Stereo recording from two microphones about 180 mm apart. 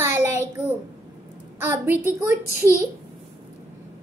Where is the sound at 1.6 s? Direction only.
10° right (ahead or behind).